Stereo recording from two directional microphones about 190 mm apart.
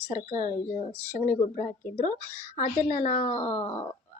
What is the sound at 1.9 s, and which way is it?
Speech, 55° left (ahead or behind).